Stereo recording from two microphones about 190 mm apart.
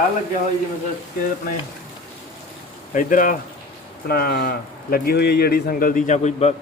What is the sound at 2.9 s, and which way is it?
Speech, 45° left (ahead or behind).